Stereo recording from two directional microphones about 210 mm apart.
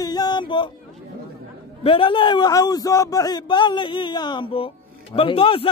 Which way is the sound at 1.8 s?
25° left (ahead or behind).